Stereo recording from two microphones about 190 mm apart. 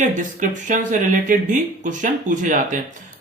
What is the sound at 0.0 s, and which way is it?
Speech, 40° right (ahead or behind).